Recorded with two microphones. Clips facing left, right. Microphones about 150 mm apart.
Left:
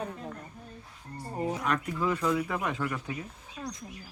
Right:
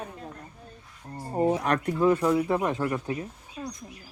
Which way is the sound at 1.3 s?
40° right (ahead or behind).